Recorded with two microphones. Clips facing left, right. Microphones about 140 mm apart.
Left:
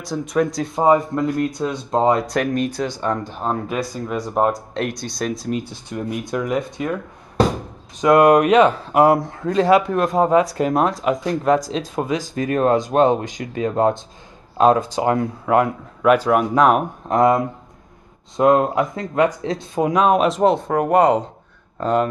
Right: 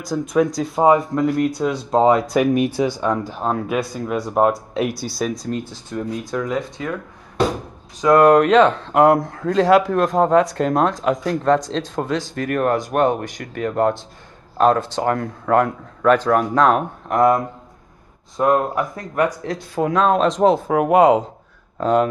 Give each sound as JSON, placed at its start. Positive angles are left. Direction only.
{"t": 0.0, "sound": "speech", "side_deg": 0}
{"t": 5.7, "sound": "speech", "side_deg": 15}
{"t": 8.0, "sound": "speech", "side_deg": 15}